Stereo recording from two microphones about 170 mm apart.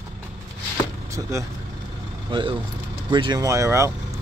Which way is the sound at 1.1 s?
20° right (ahead or behind).